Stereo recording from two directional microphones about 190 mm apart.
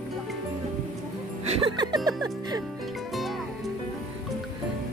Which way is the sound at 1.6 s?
25° right (ahead or behind).